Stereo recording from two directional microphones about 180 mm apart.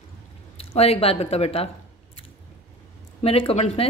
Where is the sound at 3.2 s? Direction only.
30° left (ahead or behind).